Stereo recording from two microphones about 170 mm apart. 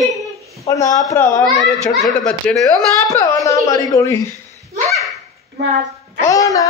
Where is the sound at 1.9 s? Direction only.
5° left (ahead or behind).